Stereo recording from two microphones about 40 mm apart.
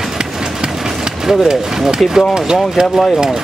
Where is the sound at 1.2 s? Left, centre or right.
Centre.